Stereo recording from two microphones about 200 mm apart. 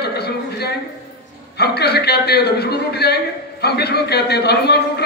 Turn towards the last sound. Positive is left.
turn(degrees=55)  # may be behind; listen again after turning